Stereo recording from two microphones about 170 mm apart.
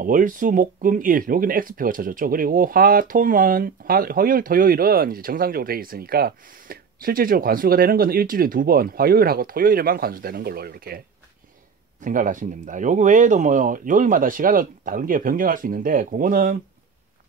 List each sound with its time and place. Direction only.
0.0 s speech: 55° right (ahead or behind)
12.0 s speech: 50° right (ahead or behind)